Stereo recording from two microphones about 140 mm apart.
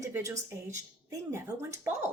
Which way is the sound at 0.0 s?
20° right (ahead or behind).